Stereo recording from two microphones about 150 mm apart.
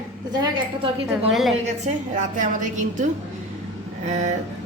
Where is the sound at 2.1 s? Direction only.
60° right (ahead or behind).